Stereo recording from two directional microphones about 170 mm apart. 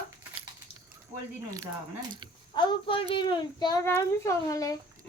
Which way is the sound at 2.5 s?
30° left (ahead or behind).